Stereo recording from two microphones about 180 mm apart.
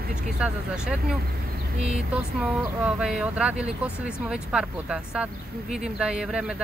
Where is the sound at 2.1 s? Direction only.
5° right (ahead or behind).